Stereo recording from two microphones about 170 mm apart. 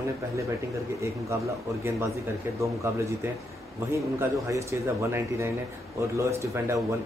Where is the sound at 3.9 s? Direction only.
15° right (ahead or behind).